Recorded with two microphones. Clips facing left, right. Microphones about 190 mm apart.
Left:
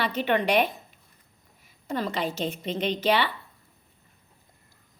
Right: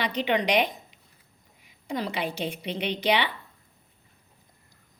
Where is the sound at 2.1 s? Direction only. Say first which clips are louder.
Left 1 dB; 15° right (ahead or behind).